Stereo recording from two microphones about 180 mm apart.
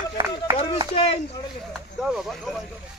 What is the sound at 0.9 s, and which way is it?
Speech, 35° left (ahead or behind).